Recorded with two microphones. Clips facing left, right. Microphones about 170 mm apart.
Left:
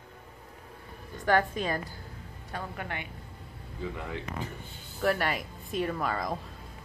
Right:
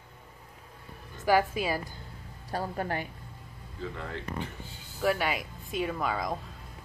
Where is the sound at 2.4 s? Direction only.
35° right (ahead or behind).